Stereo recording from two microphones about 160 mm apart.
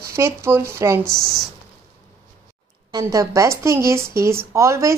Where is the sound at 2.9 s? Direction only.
20° right (ahead or behind).